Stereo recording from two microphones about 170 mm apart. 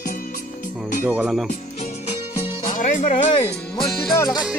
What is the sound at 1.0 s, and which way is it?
Speech, 10° right (ahead or behind).